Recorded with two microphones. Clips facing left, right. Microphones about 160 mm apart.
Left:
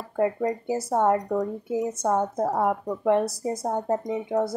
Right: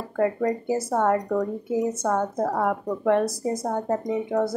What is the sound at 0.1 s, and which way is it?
Speech, 15° left (ahead or behind).